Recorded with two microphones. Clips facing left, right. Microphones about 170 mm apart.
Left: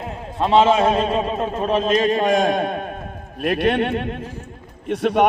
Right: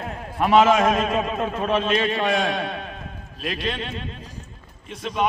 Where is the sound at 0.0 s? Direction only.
25° left (ahead or behind).